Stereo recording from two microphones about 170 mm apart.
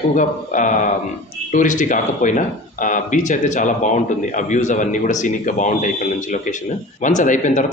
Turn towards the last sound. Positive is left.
turn(degrees=45)  # may be behind; listen again after turning